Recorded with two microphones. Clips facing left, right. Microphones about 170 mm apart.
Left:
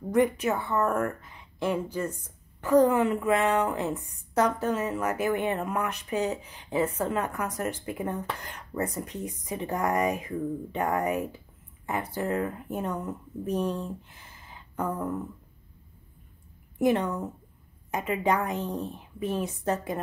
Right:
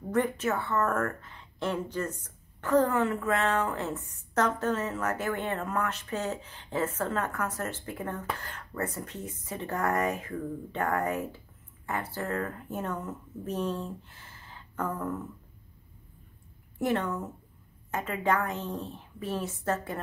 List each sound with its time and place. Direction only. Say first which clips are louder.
0.1 s a woman's voice: left 4 dB; 15° left (ahead or behind)
16.7 s a woman's voice: left 4 dB; 15° left (ahead or behind)